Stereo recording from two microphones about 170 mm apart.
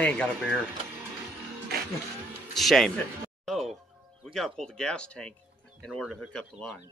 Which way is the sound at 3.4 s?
Centre (ahead or behind).